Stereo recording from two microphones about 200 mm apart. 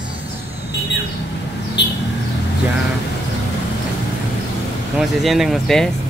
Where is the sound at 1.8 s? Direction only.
60° left (ahead or behind).